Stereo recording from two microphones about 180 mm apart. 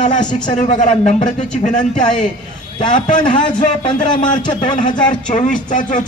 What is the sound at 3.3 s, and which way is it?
Speech, 25° left (ahead or behind).